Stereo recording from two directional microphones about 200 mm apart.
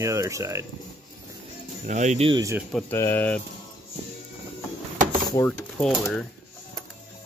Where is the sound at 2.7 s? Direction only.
Centre (ahead or behind).